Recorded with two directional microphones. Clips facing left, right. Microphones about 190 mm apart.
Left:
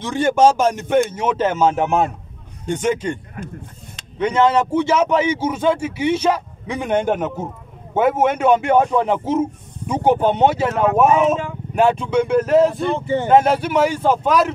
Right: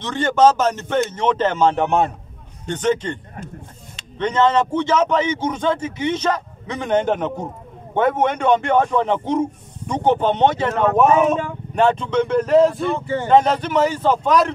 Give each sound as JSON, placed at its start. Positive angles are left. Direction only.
{"t": 0.0, "sound": "a man's voice", "side_deg": 10}
{"t": 4.2, "sound": "a man's voice", "side_deg": 10}
{"t": 13.0, "sound": "speech", "side_deg": 20}
{"t": 13.3, "sound": "a man's voice", "side_deg": 10}